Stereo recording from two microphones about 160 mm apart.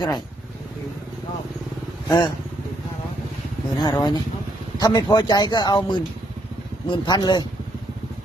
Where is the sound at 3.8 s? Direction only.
25° left (ahead or behind).